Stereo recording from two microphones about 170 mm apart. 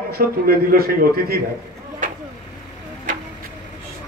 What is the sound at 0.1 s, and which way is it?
A man's voice, 60° right (ahead or behind).